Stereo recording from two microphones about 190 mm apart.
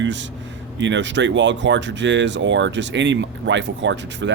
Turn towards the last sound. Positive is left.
turn(degrees=-70)  # may be behind; listen again after turning